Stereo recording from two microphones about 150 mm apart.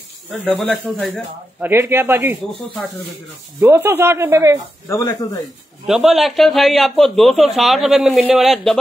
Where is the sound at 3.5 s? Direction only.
15° right (ahead or behind).